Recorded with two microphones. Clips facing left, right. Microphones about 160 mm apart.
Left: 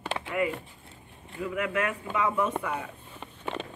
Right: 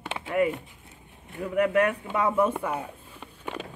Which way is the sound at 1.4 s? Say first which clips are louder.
Right 6 dB; 40° right (ahead or behind).